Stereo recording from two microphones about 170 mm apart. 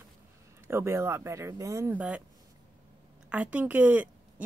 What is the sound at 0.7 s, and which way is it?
Speech, 15° right (ahead or behind).